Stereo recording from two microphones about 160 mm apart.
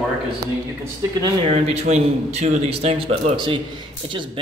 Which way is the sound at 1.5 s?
40° right (ahead or behind).